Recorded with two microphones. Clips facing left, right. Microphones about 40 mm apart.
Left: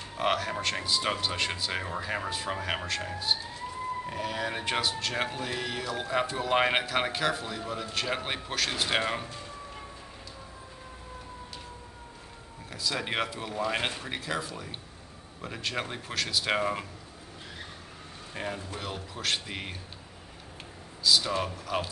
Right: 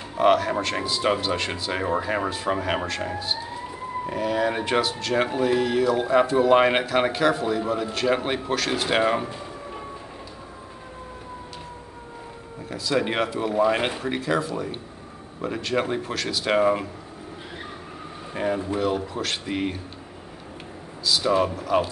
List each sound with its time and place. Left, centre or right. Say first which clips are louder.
0.2 s speech: right 9 dB; centre
12.6 s speech: right 8 dB; centre
18.3 s speech: right 11 dB; centre
21.0 s speech: right 5 dB; centre